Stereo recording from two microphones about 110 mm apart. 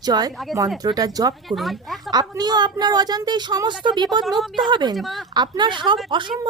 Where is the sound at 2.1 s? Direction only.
40° right (ahead or behind).